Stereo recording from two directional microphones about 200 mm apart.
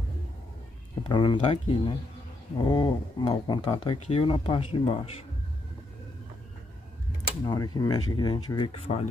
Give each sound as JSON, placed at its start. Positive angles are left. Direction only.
{"t": 1.0, "sound": "speech", "side_deg": 25}
{"t": 7.4, "sound": "speech", "side_deg": 20}